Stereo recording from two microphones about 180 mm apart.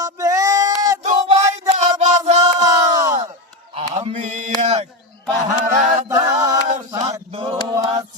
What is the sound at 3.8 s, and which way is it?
Mantra, 35° right (ahead or behind).